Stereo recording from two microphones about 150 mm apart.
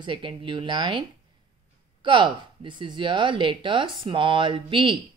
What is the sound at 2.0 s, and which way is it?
Speech, 35° right (ahead or behind).